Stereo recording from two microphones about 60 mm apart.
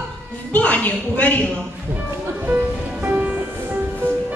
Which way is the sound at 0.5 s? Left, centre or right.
Left.